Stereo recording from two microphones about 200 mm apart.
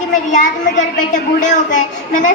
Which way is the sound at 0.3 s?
40° left (ahead or behind).